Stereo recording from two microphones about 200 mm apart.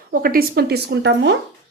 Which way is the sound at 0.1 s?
45° right (ahead or behind).